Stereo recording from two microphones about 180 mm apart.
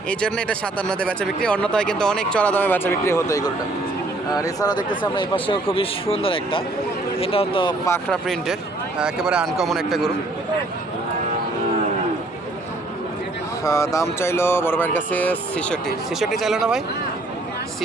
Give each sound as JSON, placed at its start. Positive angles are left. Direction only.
{"t": 0.1, "sound": "speech", "side_deg": 5}
{"t": 8.1, "sound": "speech", "side_deg": 0}
{"t": 13.7, "sound": "speech", "side_deg": 20}